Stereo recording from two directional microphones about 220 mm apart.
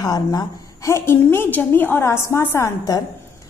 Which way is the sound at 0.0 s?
20° left (ahead or behind).